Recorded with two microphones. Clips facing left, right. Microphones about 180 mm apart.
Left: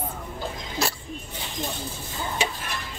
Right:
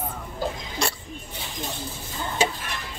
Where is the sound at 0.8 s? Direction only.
5° left (ahead or behind).